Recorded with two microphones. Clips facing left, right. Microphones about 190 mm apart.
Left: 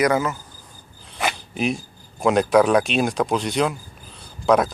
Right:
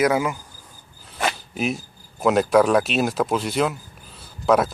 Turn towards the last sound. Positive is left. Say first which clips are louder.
# left 1 dB
turn(degrees=-5)  # may be behind; listen again after turning